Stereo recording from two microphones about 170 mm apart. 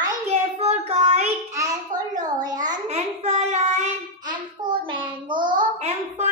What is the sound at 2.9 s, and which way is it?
Child singing, 40° right (ahead or behind).